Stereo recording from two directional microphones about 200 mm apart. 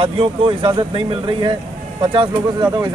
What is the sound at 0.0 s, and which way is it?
Speech, 25° right (ahead or behind).